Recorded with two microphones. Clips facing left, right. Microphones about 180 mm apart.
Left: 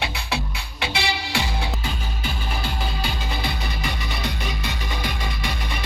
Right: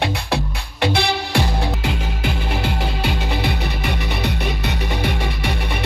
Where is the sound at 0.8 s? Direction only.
55° right (ahead or behind).